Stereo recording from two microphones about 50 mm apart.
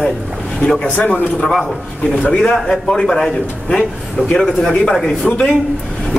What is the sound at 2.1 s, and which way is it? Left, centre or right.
A man's voice, centre.